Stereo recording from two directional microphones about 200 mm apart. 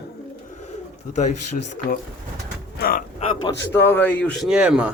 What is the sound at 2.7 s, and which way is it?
Speech, 50° left (ahead or behind).